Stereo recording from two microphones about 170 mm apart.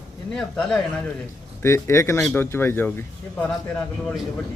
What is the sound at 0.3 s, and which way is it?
Speech, 5° left (ahead or behind).